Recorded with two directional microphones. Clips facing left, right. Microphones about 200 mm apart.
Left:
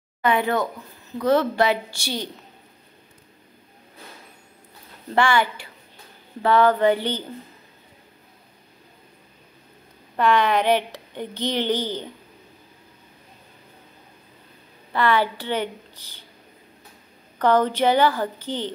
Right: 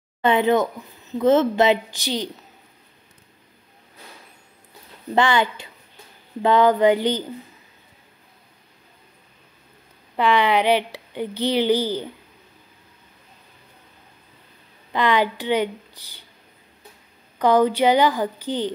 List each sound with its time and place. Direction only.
0.2 s a woman's voice: 25° right (ahead or behind)
5.1 s a woman's voice: 20° right (ahead or behind)
10.1 s a woman's voice: 15° right (ahead or behind)
14.9 s a woman's voice: 15° right (ahead or behind)
17.4 s a woman's voice: 10° right (ahead or behind)